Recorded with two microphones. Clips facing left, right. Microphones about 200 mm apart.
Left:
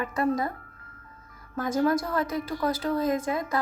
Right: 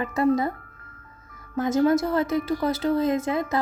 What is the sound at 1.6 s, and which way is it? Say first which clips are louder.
A woman's voice: right 4 dB; 25° right (ahead or behind).